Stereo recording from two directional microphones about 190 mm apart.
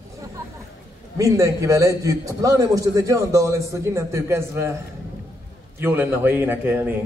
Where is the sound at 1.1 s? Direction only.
15° right (ahead or behind).